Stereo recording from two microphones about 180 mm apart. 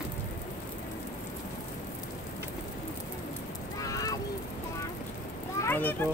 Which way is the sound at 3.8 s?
20° left (ahead or behind).